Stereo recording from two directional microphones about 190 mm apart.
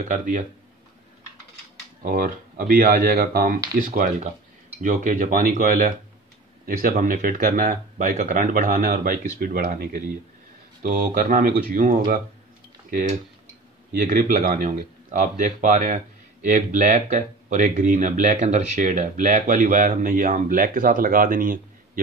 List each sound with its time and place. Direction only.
0.1 s speech: 45° right (ahead or behind)
2.0 s speech: 50° right (ahead or behind)
14.0 s speech: 45° right (ahead or behind)